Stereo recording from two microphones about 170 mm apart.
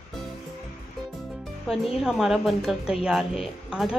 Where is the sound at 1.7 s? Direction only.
Centre (ahead or behind).